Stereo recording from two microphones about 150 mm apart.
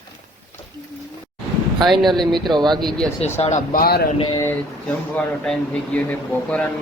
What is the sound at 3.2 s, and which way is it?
Speech, 45° left (ahead or behind).